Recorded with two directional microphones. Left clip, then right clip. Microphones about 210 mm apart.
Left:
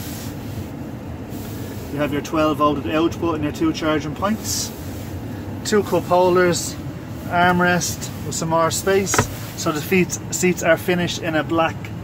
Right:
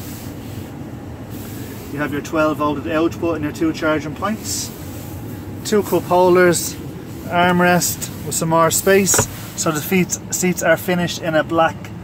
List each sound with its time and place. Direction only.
2.0 s speech: 5° left (ahead or behind)
5.7 s speech: 15° right (ahead or behind); by 9.1 s 30° right (ahead or behind)
9.6 s speech: 15° right (ahead or behind)